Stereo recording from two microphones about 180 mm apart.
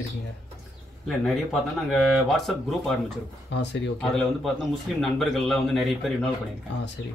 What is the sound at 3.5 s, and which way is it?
Speech, 80° left.